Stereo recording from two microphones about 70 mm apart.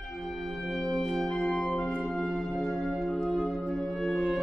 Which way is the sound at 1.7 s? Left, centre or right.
Centre.